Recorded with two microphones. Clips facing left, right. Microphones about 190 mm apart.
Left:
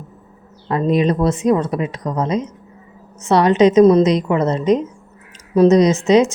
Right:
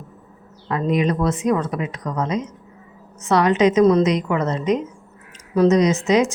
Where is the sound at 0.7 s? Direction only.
30° left (ahead or behind).